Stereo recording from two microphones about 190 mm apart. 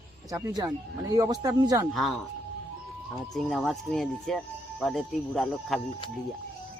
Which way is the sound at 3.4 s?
Centre (ahead or behind).